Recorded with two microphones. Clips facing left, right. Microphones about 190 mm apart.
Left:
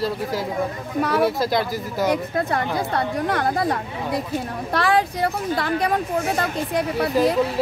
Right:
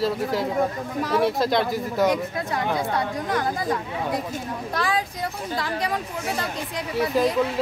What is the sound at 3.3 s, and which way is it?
Speech, 65° left (ahead or behind).